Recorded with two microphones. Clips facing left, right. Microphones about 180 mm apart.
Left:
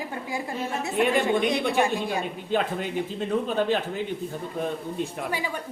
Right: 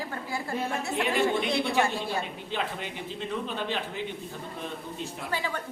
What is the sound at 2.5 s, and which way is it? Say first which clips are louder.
A man's voice: left 8 dB; 50° left (ahead or behind).